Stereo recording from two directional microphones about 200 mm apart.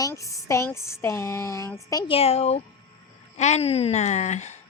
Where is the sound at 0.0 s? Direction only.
15° left (ahead or behind); by 2.6 s 30° left (ahead or behind).